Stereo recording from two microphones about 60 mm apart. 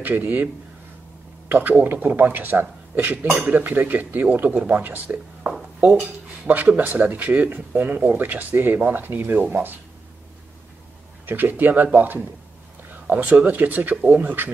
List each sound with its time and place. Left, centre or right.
0.0 s speech: right
1.5 s speech: right
6.4 s speech: right
11.2 s speech: right